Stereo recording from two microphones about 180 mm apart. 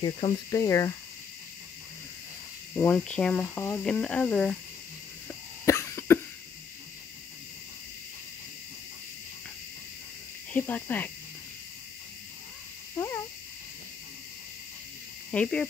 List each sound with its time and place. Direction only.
0.0 s speech: 25° left (ahead or behind)
2.7 s speech: 5° left (ahead or behind)
5.7 s cough: 15° left (ahead or behind)
10.5 s speech: 10° left (ahead or behind)
15.3 s speech: 5° left (ahead or behind)